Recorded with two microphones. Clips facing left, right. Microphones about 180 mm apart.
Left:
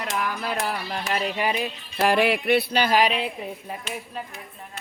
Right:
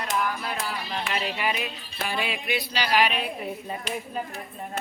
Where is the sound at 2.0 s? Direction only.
80° left; by 3.0 s 50° left (ahead or behind).